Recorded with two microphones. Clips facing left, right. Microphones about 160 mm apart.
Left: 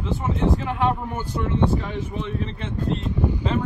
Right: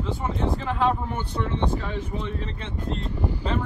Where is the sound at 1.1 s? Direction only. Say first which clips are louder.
Left 3 dB; 10° left (ahead or behind).